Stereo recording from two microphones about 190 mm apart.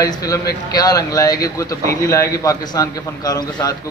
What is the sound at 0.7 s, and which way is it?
A man's voice, 20° left (ahead or behind).